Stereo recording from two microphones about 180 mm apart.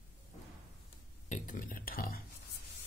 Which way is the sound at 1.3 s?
50° left (ahead or behind).